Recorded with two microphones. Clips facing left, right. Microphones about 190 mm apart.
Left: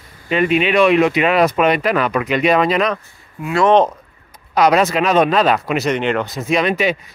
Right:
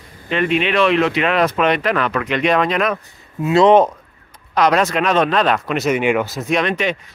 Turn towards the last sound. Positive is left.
turn(degrees=5)  # may be behind; listen again after turning